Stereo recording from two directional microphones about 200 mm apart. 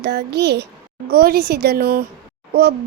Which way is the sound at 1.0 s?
50° right (ahead or behind).